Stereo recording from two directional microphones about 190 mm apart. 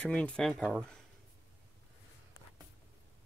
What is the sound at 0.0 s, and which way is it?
Speech, 5° left (ahead or behind).